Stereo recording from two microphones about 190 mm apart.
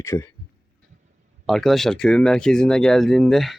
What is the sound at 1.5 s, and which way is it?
Speech, centre (ahead or behind).